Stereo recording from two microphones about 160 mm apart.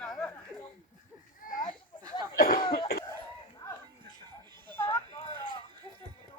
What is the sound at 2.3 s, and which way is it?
Cough, 65° left (ahead or behind).